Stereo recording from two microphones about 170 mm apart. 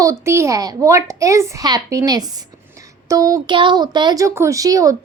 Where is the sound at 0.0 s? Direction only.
15° right (ahead or behind).